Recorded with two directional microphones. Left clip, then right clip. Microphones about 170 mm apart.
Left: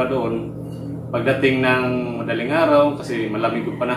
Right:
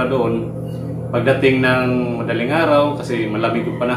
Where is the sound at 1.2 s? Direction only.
5° right (ahead or behind).